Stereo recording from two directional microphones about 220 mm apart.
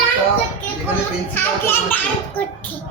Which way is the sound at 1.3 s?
10° left (ahead or behind).